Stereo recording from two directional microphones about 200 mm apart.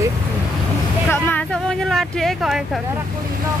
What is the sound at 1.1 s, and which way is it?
Speech, 10° left (ahead or behind).